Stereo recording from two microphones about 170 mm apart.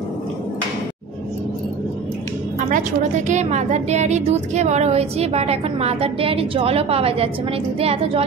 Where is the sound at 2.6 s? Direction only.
50° right (ahead or behind).